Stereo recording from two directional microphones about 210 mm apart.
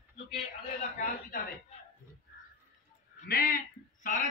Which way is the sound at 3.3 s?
45° left (ahead or behind).